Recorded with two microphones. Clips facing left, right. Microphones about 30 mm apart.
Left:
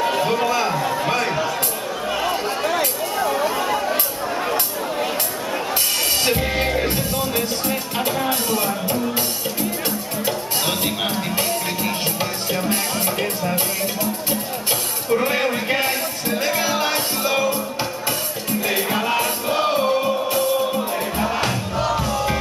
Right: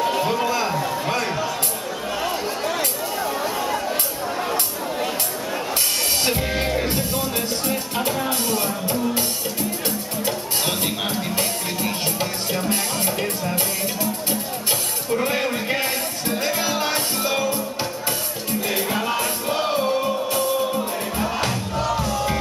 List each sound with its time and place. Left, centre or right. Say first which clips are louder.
0.0 s chatter: left 2 dB; centre
2.1 s a sound: left 3 dB; centre
6.2 s music: left 3 dB; centre
15.0 s music: left 3 dB; centre
18.5 s music: left 2 dB; centre